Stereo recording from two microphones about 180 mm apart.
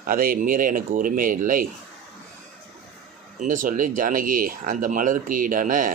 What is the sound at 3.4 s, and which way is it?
Speech, 45° right (ahead or behind).